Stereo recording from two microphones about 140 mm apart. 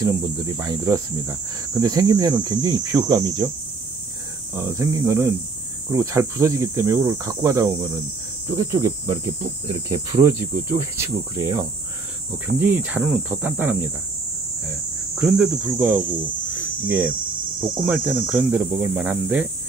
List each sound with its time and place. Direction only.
0.0 s speech: 25° right (ahead or behind)
4.6 s speech: 20° right (ahead or behind)
10.1 s speech: 20° right (ahead or behind)
13.0 s cricket: centre (ahead or behind)
13.4 s speech: 10° right (ahead or behind)
15.1 s speech: 5° right (ahead or behind)
16.5 s cricket: 15° right (ahead or behind)
17.8 s speech: 15° right (ahead or behind)